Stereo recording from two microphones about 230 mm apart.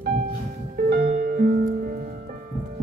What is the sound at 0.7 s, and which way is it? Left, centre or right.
Music, right.